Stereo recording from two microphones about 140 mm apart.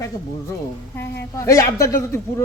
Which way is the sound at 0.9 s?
20° left (ahead or behind).